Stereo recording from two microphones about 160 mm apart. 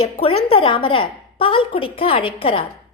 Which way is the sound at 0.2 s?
35° left (ahead or behind).